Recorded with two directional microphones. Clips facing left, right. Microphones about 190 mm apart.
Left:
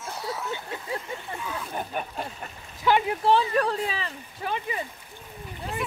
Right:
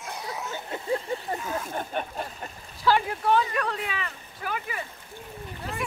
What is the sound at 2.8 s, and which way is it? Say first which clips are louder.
Speech: left 2 dB; 20° left (ahead or behind).